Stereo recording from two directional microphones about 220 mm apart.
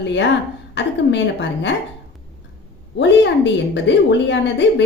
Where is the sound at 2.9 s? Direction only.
55° left (ahead or behind).